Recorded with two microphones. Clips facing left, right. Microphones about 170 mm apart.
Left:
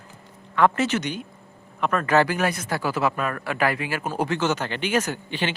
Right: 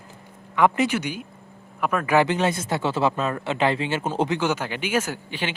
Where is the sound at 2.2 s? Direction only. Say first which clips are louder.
Right 2 dB; 25° right (ahead or behind).